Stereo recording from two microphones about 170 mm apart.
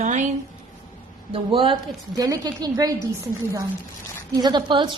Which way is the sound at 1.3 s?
30° right (ahead or behind).